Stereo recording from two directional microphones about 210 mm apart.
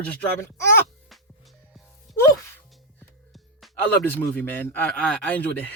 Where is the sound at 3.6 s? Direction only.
10° left (ahead or behind).